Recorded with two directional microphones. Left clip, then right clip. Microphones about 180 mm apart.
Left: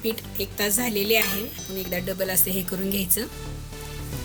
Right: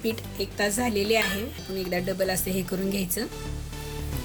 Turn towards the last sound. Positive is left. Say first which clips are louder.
# left 1 dB
turn(degrees=-10)  # may be behind; listen again after turning